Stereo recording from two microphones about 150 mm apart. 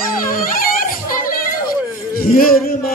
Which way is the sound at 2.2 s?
75° left (ahead or behind).